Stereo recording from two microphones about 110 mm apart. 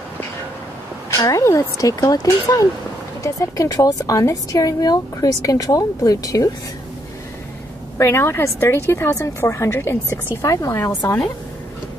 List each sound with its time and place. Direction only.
1.1 s speech: 30° left (ahead or behind)
8.0 s a woman's voice: 25° left (ahead or behind)